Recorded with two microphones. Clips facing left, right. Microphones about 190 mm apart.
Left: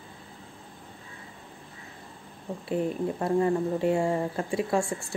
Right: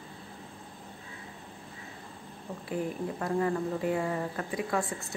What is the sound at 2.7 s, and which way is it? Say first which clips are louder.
Speech: left 5 dB; 25° left (ahead or behind).